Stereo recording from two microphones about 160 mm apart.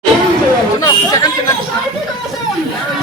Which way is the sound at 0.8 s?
25° left (ahead or behind).